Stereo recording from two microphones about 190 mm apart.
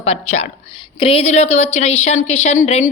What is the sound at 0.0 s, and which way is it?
A woman's voice, 35° left (ahead or behind).